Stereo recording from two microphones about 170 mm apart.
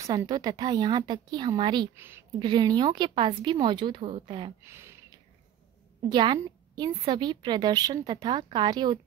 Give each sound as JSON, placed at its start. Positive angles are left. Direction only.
{"t": 0.0, "sound": "a woman's voice", "side_deg": -20}
{"t": 2.0, "sound": "a woman's voice", "side_deg": -15}
{"t": 2.3, "sound": "a woman's voice", "side_deg": -25}
{"t": 4.6, "sound": "speech", "side_deg": -15}
{"t": 6.0, "sound": "a woman's voice", "side_deg": -25}